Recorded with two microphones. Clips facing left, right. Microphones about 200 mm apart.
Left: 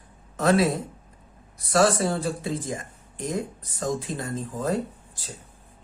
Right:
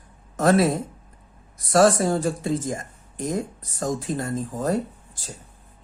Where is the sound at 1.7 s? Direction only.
45° right (ahead or behind).